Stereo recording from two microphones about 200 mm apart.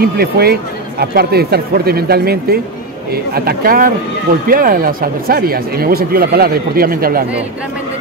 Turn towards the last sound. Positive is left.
turn(degrees=-45)  # may be behind; listen again after turning